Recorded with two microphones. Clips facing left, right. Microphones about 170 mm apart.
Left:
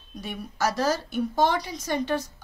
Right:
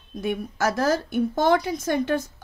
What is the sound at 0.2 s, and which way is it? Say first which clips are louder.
Speech: right 4 dB; 50° right (ahead or behind).